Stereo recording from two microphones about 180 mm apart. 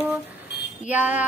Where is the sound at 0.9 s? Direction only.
10° right (ahead or behind).